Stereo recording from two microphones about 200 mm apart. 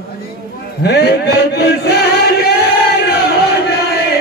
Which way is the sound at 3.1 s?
55° left (ahead or behind).